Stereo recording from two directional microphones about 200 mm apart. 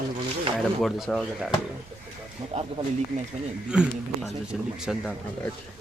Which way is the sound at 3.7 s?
5° right (ahead or behind).